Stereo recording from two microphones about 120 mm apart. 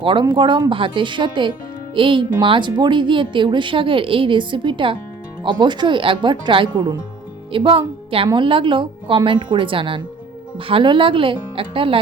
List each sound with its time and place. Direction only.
0.0 s a woman's voice: 45° right (ahead or behind)
7.5 s a woman's voice: 45° right (ahead or behind)